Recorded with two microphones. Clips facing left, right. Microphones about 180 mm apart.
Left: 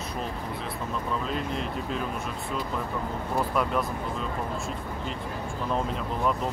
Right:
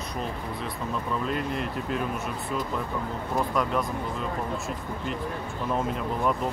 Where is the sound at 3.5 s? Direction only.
5° left (ahead or behind).